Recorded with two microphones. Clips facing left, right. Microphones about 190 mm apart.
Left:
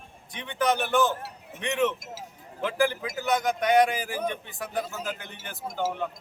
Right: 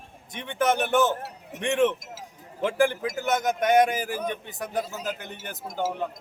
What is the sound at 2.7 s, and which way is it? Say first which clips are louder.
A man's voice: right 3 dB; 50° right (ahead or behind).